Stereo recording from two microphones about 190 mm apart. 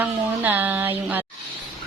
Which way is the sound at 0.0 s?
10° right (ahead or behind).